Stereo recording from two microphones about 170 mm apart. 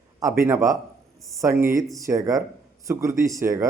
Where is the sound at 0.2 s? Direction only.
15° right (ahead or behind).